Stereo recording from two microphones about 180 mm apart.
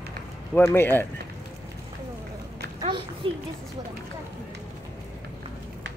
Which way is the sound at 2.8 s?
25° right (ahead or behind).